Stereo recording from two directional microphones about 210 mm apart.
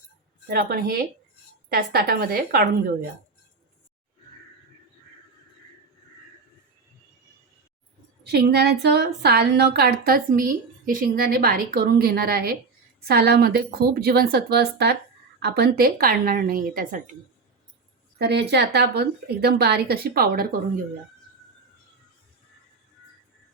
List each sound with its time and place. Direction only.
0.4 s a woman's voice: 45° right (ahead or behind)
8.2 s a woman's voice: 50° right (ahead or behind)
18.2 s a woman's voice: 50° right (ahead or behind)